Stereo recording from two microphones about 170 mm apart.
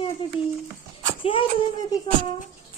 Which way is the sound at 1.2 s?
30° left (ahead or behind).